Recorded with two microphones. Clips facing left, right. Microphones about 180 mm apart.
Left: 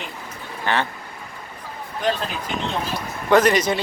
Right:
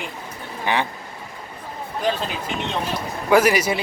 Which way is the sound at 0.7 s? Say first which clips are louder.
Even; 15° right (ahead or behind).